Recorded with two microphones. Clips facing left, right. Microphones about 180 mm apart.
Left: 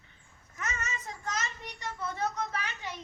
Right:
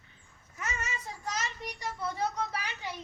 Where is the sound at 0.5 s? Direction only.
10° right (ahead or behind).